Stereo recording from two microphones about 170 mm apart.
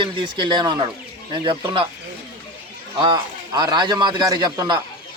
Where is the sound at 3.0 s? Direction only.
25° right (ahead or behind).